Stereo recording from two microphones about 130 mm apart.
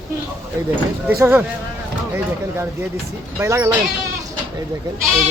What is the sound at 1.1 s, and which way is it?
Speech, 20° right (ahead or behind).